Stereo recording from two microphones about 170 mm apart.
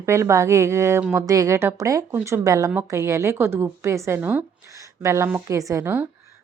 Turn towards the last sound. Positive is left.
turn(degrees=-10)  # may be behind; listen again after turning